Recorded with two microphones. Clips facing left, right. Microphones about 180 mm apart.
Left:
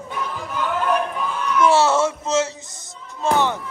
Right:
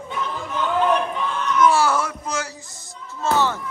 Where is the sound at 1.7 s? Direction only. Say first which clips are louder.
Left 3 dB; 25° left (ahead or behind).